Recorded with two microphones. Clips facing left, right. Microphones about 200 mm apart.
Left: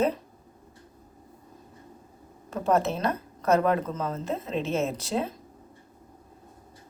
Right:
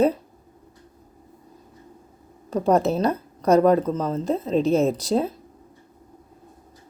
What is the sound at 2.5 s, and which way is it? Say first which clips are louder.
Speech: right 5 dB; 35° right (ahead or behind).